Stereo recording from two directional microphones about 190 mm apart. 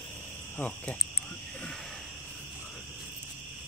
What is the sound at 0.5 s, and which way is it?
Cricket, 5° left (ahead or behind).